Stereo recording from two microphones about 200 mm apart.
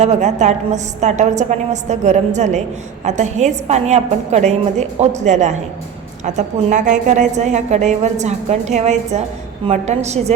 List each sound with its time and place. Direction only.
0.0 s a woman's voice: 35° right (ahead or behind)